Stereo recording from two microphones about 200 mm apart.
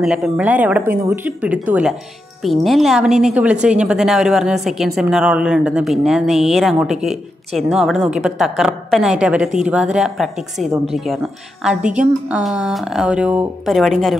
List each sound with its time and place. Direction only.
0.0 s a woman's voice: 5° right (ahead or behind)